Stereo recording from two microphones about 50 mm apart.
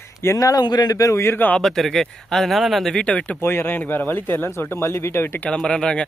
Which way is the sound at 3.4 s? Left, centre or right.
Left.